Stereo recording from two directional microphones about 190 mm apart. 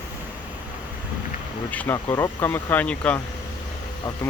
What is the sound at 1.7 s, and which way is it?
Speech, 10° left (ahead or behind).